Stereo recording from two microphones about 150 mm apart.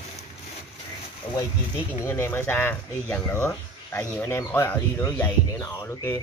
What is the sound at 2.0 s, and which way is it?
Speech, 15° left (ahead or behind).